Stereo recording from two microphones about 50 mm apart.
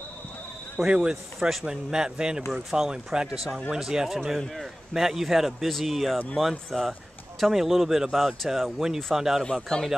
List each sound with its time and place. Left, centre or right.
0.8 s speech: centre
9.4 s speech: centre